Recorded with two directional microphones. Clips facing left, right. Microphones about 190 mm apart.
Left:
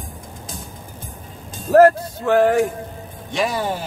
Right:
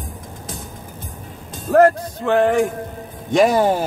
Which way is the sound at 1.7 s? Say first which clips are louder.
Left 1 dB; 5° left (ahead or behind).